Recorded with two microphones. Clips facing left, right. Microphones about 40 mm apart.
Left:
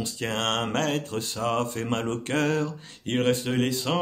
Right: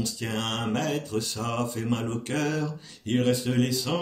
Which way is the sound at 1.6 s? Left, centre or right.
Left.